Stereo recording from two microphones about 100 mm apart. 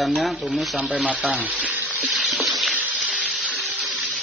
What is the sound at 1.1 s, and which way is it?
Frying, 10° right (ahead or behind).